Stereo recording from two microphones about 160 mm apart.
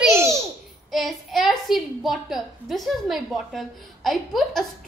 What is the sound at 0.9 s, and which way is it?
A woman's voice, centre (ahead or behind).